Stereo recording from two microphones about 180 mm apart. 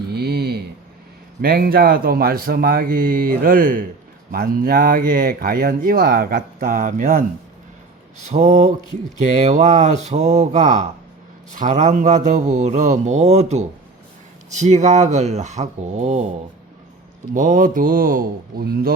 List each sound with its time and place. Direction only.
0.1 s a sound: 65° right (ahead or behind)
1.4 s a man's voice: 60° right (ahead or behind); by 16.3 s 40° right (ahead or behind)
17.3 s speech: 45° right (ahead or behind)